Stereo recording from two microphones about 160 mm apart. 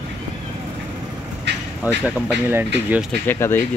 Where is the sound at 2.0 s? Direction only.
10° right (ahead or behind).